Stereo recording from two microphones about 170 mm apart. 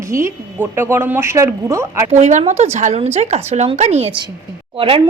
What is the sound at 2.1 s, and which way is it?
Speech, 40° right (ahead or behind).